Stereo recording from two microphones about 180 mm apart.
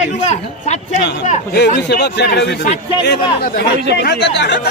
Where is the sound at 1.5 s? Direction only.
65° left (ahead or behind).